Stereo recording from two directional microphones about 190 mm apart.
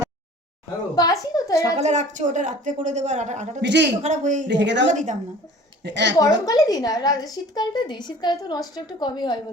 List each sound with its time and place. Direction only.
0.9 s a sound: 20° left (ahead or behind)
1.7 s a woman's voice: 35° right (ahead or behind)
3.6 s a woman's voice: 65° right (ahead or behind)
4.0 s a woman's voice: 40° right (ahead or behind)
4.4 s a woman's voice: 70° right (ahead or behind)
4.9 s a woman's voice: 40° right (ahead or behind)
5.8 s a woman's voice: 65° right (ahead or behind)
6.1 s a woman's voice: 20° left (ahead or behind)